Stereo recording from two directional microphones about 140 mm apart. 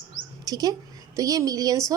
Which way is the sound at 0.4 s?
25° right (ahead or behind).